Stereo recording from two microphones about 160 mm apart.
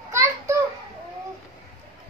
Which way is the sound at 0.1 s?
15° right (ahead or behind).